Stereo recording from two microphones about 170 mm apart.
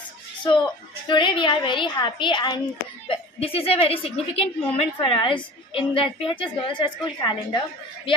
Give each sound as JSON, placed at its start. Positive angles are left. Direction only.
{"t": 1.0, "sound": "a woman's voice", "side_deg": 30}